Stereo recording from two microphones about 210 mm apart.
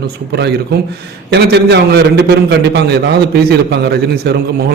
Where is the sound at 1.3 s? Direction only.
50° right (ahead or behind).